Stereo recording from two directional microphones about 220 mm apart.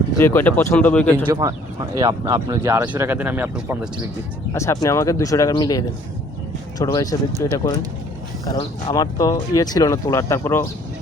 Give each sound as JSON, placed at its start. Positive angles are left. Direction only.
{"t": 0.2, "sound": "speech", "side_deg": 10}
{"t": 1.3, "sound": "speech", "side_deg": -15}
{"t": 4.5, "sound": "speech", "side_deg": 15}